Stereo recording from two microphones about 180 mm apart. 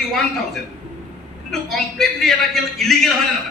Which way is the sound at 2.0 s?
Centre (ahead or behind).